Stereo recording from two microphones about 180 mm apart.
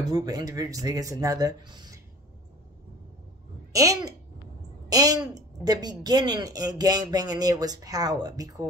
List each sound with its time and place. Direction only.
0.0 s speech: 20° right (ahead or behind)
3.7 s speech: 20° right (ahead or behind)